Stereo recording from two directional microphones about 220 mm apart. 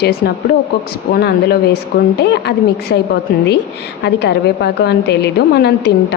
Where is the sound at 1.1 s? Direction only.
45° left (ahead or behind).